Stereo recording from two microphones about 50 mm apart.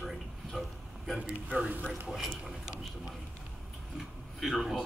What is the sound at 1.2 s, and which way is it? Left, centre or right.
Speech, right.